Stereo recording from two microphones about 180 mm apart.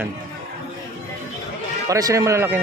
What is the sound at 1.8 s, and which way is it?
Speech, 20° right (ahead or behind).